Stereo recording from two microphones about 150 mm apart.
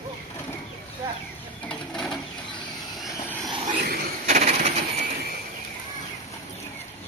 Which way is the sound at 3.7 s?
65° right (ahead or behind).